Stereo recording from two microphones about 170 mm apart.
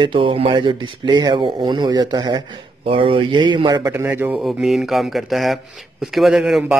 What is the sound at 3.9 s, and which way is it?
Speech, 15° right (ahead or behind).